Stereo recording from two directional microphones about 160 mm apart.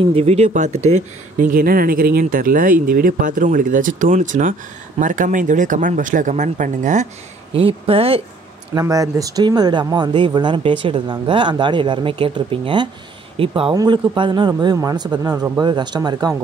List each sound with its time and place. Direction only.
0.0 s speech: 40° right (ahead or behind)
7.5 s speech: 35° right (ahead or behind)
8.7 s speech: 20° right (ahead or behind)